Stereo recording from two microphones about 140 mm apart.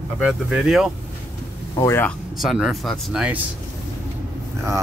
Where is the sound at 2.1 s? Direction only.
Centre (ahead or behind).